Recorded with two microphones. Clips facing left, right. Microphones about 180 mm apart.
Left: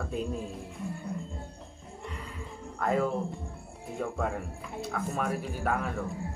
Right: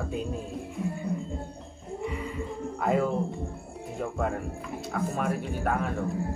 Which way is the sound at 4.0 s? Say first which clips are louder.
Right 2 dB; centre (ahead or behind).